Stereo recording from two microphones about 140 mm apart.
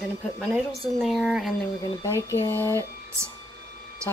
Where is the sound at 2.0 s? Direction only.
20° left (ahead or behind).